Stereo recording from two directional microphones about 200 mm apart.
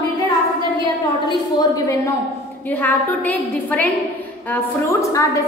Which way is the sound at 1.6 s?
15° left (ahead or behind).